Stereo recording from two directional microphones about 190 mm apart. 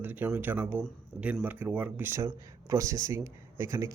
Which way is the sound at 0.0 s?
10° right (ahead or behind).